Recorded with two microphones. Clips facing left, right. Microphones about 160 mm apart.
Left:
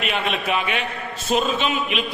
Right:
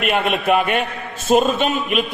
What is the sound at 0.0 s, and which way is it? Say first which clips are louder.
A man's voice: right 5 dB; 55° right (ahead or behind).